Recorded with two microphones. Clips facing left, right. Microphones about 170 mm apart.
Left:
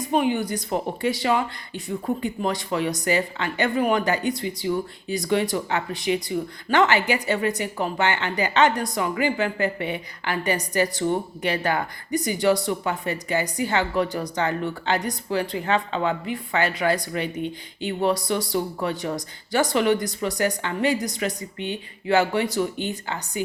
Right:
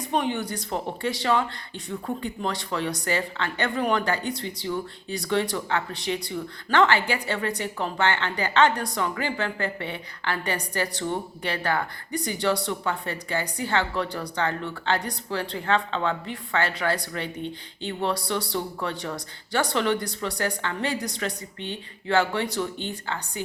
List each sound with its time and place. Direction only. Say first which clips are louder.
0.0 s speech: left 4 dB; 10° left (ahead or behind)